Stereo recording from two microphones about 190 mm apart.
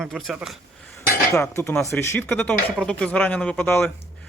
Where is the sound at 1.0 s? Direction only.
15° left (ahead or behind).